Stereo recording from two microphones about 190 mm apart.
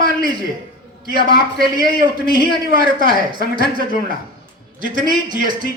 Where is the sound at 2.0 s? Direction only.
45° right (ahead or behind).